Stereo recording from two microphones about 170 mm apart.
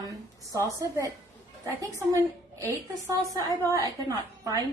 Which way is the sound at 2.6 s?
15° right (ahead or behind).